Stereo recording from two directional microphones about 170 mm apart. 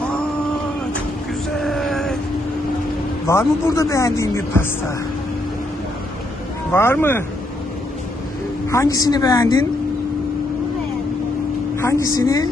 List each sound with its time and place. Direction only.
1.5 s a sound: centre (ahead or behind)
3.2 s speech: 15° left (ahead or behind)
6.7 s speech: 15° left (ahead or behind)
8.7 s a woman's voice: 20° left (ahead or behind)
11.8 s a woman's voice: 15° left (ahead or behind)